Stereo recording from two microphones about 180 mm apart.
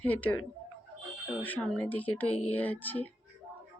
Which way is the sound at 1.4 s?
10° left (ahead or behind).